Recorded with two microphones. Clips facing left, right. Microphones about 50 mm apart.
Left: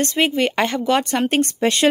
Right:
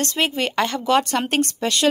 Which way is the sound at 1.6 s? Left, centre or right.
Left.